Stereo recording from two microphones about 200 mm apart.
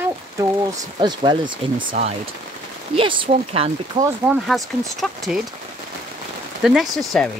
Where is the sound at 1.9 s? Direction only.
35° right (ahead or behind).